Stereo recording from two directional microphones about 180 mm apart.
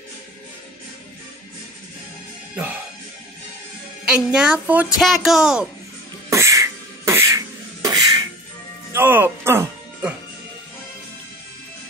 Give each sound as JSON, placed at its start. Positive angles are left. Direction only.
{"t": 2.5, "sound": "music", "side_deg": -10}
{"t": 4.1, "sound": "speech", "side_deg": -5}
{"t": 6.3, "sound": "beatboxing", "side_deg": -15}
{"t": 8.9, "sound": "music", "side_deg": -10}